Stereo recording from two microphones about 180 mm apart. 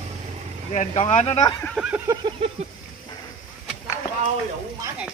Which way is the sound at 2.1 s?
25° right (ahead or behind).